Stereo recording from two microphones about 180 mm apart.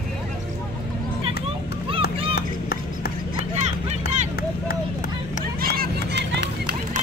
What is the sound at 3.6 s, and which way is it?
Vehicle, 40° right (ahead or behind).